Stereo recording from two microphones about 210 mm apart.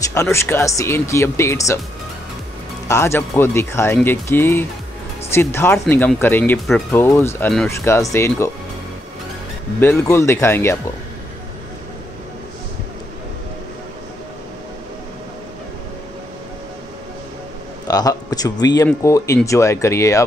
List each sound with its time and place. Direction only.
0.0 s speech: 15° left (ahead or behind)
2.9 s speech: 10° left (ahead or behind)
9.8 s speech: 10° left (ahead or behind)
17.8 s speech: 20° left (ahead or behind)